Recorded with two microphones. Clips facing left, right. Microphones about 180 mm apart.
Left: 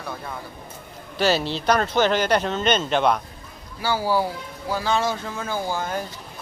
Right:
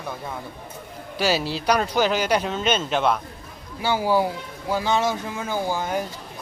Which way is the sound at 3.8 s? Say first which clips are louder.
Right 1 dB; 20° right (ahead or behind).